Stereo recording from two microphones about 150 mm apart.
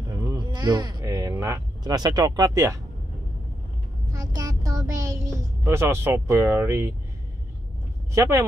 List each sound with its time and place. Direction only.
0.1 s speech: 25° right (ahead or behind)
4.1 s a sound: 25° right (ahead or behind)
8.1 s speech: 20° right (ahead or behind)